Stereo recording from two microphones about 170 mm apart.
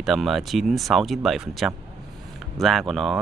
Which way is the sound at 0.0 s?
Centre (ahead or behind).